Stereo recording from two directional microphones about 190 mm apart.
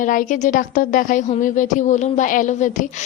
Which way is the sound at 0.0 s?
45° left (ahead or behind).